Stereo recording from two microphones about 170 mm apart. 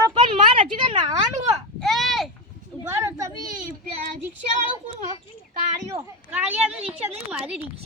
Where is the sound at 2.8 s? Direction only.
15° right (ahead or behind).